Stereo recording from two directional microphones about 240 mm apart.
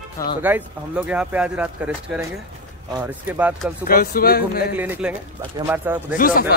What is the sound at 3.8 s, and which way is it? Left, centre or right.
Speech, left.